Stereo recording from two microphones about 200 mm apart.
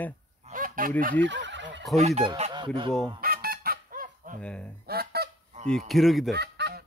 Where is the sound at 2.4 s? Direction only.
20° right (ahead or behind).